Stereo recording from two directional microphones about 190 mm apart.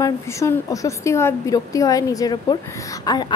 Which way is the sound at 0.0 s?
15° left (ahead or behind).